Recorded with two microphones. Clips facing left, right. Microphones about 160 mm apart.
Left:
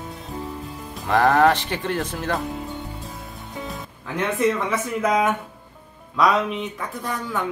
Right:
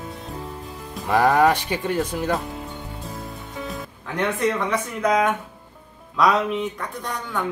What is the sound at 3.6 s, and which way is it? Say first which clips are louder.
Speech: right 1 dB; centre (ahead or behind).